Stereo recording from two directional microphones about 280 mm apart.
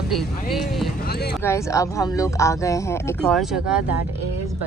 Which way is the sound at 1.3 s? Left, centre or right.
Centre.